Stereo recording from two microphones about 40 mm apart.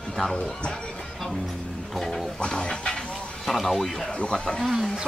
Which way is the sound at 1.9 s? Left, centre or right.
Centre.